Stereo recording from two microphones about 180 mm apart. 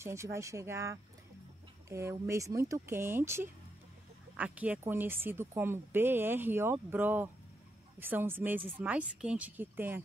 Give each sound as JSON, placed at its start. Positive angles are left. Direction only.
{"t": 0.0, "sound": "speech", "side_deg": -15}